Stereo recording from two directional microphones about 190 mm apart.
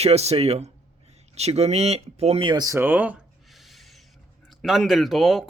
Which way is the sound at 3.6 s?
Centre (ahead or behind).